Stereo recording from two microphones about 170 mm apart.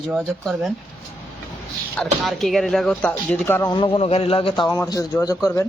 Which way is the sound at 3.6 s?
30° left (ahead or behind).